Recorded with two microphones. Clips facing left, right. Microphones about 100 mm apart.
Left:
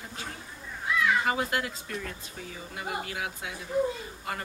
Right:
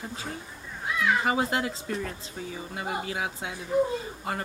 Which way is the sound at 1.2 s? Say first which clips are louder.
Right 3 dB; 25° right (ahead or behind).